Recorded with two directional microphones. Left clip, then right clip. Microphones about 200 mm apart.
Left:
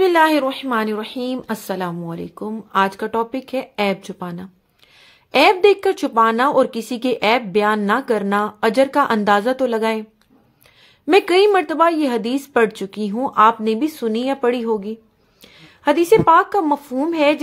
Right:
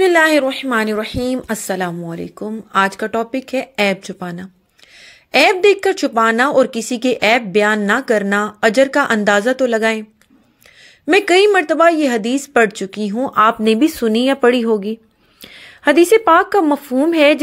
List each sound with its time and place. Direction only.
0.0 s a woman's voice: 10° right (ahead or behind)
11.1 s a woman's voice: 10° right (ahead or behind)
13.3 s speech: 25° right (ahead or behind)